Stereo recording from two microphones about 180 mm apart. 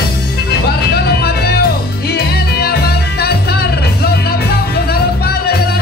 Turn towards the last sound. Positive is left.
turn(degrees=60)  # may be behind; listen again after turning